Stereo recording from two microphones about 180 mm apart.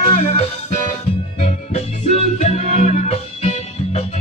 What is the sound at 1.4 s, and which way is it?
Music, 35° left (ahead or behind).